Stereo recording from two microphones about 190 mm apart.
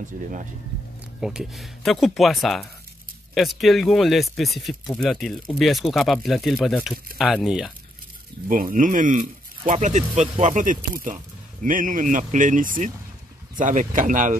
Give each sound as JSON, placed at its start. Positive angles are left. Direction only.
{"t": 1.2, "sound": "speech", "side_deg": 0}
{"t": 8.5, "sound": "speech", "side_deg": -45}